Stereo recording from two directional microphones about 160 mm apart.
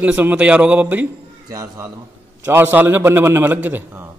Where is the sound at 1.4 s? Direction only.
20° right (ahead or behind).